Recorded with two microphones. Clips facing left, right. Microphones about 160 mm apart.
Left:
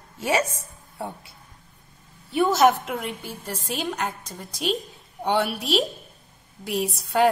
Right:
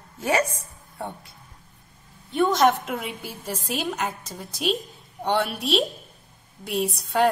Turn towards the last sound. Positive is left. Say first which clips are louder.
# left 1 dB
turn(degrees=0)  # may be behind; listen again after turning